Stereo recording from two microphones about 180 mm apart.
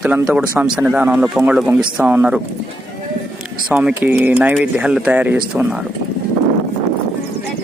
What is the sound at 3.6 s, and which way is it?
Speech, 5° right (ahead or behind).